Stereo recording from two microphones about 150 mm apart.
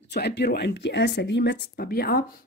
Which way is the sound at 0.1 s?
90° left.